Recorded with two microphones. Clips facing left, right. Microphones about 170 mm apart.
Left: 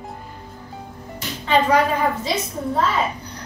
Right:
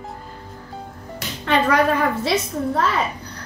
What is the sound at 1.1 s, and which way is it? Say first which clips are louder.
Speech: left 1 dB; 65° right (ahead or behind).